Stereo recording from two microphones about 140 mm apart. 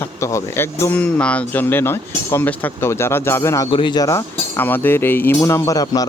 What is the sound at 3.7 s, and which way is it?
Speech, 35° left (ahead or behind).